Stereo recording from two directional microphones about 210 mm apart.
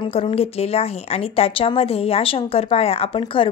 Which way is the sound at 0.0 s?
25° left (ahead or behind).